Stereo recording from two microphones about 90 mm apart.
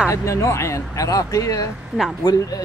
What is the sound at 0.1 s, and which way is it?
Speech, 35° left (ahead or behind).